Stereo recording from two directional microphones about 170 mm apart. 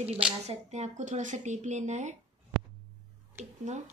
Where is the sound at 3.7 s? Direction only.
45° right (ahead or behind).